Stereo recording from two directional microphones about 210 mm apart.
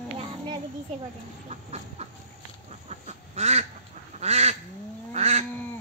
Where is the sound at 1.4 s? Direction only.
30° right (ahead or behind).